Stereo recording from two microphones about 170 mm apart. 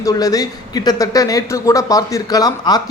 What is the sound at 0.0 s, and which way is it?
Speech, 20° left (ahead or behind).